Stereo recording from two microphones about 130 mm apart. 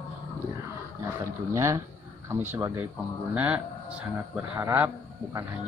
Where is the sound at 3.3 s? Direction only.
10° right (ahead or behind).